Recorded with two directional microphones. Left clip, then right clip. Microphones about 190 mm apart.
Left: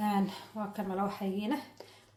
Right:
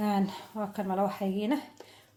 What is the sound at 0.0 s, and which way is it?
Speech, 40° right (ahead or behind).